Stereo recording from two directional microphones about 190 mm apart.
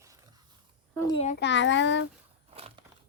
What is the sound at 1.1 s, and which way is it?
Speech, 30° left (ahead or behind).